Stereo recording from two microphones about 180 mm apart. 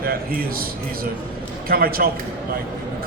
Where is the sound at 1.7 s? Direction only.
55° right (ahead or behind).